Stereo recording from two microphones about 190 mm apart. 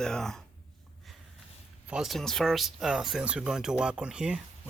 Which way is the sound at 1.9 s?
Centre (ahead or behind).